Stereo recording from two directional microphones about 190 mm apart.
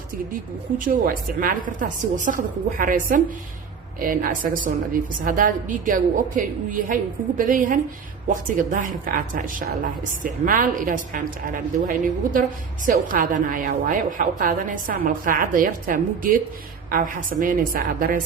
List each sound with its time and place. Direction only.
0.9 s a woman's voice: 45° right (ahead or behind)